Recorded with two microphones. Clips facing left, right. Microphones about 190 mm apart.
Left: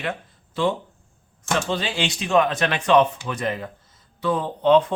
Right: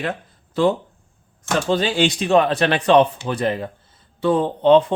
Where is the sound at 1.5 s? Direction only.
40° right (ahead or behind).